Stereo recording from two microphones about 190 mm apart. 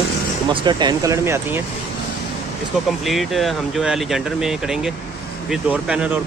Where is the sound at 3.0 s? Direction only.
Centre (ahead or behind).